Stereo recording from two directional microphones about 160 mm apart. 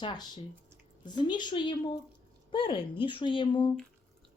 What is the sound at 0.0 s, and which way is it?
A woman's voice, 25° left (ahead or behind).